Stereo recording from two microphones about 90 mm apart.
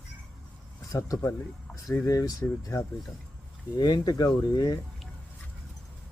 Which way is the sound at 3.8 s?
50° left (ahead or behind).